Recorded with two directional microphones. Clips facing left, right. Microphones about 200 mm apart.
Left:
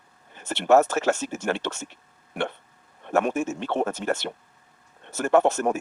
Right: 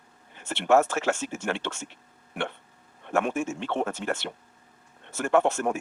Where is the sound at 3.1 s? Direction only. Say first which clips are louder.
Left 3 dB; 40° left (ahead or behind).